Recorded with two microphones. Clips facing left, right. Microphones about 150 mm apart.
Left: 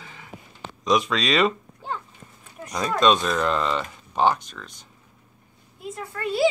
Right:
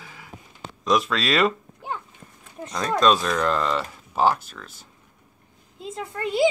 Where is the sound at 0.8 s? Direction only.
Centre (ahead or behind).